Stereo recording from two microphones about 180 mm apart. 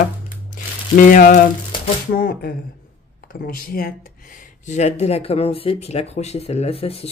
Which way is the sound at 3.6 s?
55° left (ahead or behind).